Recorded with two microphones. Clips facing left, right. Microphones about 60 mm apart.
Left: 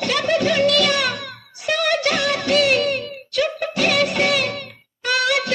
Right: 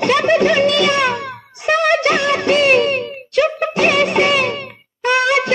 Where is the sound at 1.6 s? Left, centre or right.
Right.